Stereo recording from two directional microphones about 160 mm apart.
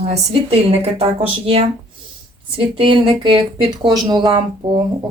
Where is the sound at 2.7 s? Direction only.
30° right (ahead or behind).